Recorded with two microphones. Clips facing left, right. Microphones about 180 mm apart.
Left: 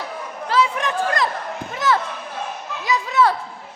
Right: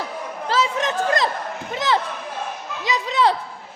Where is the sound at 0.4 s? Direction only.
25° right (ahead or behind).